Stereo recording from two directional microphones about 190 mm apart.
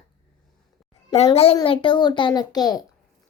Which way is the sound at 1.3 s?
30° left (ahead or behind).